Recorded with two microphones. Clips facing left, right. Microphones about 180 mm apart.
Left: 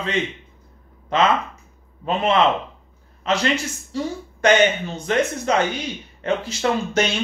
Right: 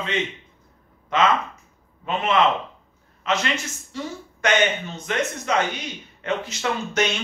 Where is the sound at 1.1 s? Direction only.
35° left (ahead or behind).